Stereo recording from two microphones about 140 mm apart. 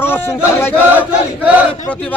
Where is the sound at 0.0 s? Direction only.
15° left (ahead or behind).